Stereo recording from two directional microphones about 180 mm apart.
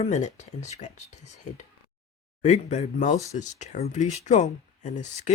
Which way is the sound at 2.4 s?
40° left (ahead or behind).